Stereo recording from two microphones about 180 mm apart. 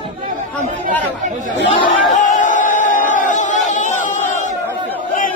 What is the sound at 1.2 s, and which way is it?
Speech, 45° right (ahead or behind).